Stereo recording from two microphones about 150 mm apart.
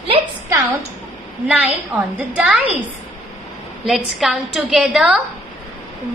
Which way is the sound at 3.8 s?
Centre (ahead or behind).